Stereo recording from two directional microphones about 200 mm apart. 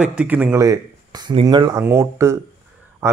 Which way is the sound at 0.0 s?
5° right (ahead or behind).